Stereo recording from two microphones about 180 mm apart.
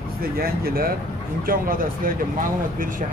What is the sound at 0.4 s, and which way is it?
Speech, 55° right (ahead or behind).